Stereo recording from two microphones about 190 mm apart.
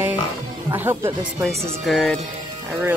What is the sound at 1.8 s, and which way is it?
Speech, centre (ahead or behind).